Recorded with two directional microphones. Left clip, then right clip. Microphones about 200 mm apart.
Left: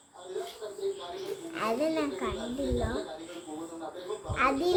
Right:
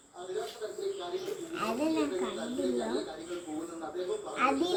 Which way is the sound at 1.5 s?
25° left (ahead or behind).